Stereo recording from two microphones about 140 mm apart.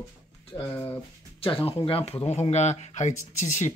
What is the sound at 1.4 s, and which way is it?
Speech, 40° left (ahead or behind).